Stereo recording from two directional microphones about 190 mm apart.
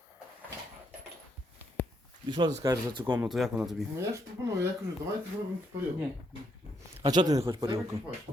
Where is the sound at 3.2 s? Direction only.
Centre (ahead or behind).